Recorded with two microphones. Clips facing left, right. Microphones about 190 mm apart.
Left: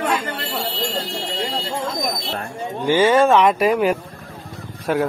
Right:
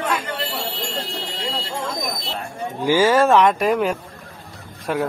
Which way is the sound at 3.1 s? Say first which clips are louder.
Left 1 dB; centre (ahead or behind).